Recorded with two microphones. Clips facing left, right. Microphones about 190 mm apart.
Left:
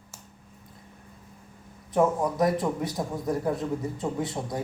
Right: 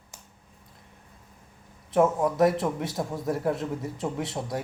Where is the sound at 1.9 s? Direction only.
Centre (ahead or behind).